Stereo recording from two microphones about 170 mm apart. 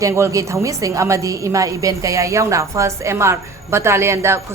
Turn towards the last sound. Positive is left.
turn(degrees=-15)  # may be behind; listen again after turning